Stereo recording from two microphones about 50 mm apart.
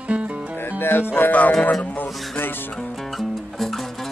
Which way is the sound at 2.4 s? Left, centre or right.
Left.